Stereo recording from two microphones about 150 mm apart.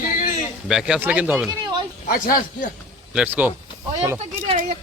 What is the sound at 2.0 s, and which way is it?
Speech, 70° left (ahead or behind).